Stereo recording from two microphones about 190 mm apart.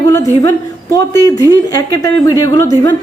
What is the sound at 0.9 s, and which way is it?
A woman's voice, 20° left (ahead or behind).